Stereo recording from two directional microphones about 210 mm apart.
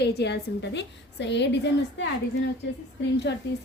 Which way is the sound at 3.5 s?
55° left (ahead or behind).